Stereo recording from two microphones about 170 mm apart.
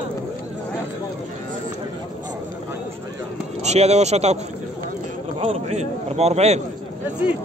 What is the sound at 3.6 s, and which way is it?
Speech, 40° right (ahead or behind).